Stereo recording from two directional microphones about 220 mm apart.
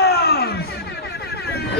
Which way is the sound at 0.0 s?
45° left (ahead or behind).